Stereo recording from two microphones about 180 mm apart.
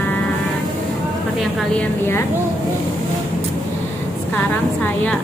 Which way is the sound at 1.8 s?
15° left (ahead or behind).